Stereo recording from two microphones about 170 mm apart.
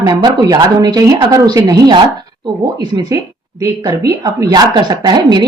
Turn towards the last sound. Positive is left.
turn(degrees=-25)  # may be behind; listen again after turning